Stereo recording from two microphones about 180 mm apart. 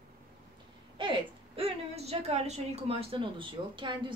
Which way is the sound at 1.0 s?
30° right (ahead or behind).